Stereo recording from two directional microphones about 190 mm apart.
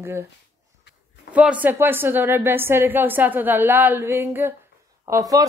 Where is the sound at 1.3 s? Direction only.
5° right (ahead or behind).